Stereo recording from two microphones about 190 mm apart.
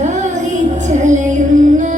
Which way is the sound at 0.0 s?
40° right (ahead or behind).